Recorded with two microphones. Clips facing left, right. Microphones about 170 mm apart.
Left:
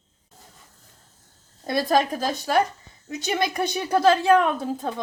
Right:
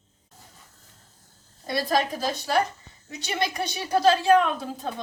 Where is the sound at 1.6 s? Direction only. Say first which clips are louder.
Left 3 dB; 45° left (ahead or behind).